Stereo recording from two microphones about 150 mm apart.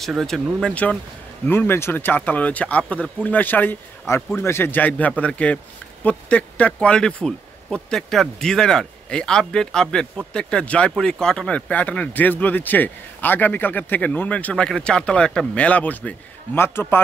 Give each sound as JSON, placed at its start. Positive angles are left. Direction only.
{"t": 0.0, "sound": "speech", "side_deg": 0}